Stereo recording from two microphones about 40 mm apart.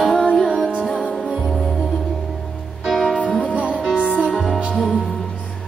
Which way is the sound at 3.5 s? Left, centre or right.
Right.